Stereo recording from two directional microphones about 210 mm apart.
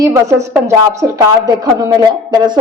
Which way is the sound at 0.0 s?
15° right (ahead or behind).